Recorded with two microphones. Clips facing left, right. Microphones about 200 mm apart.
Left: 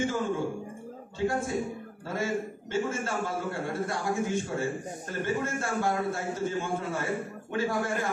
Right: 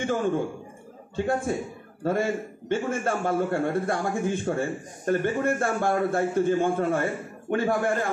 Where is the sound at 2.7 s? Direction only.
55° right (ahead or behind).